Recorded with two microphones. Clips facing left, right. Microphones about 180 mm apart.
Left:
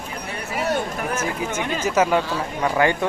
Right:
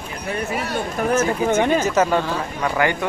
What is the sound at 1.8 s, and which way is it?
Speech, 10° left (ahead or behind).